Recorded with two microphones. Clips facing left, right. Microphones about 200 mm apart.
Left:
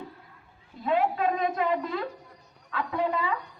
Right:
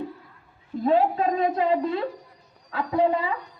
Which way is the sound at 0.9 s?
35° right (ahead or behind).